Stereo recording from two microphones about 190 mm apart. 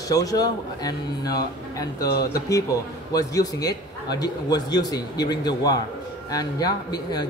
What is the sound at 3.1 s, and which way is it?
A man's voice, 20° left (ahead or behind).